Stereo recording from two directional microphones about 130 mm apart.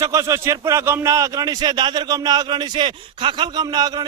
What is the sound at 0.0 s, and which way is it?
Speech, 25° right (ahead or behind).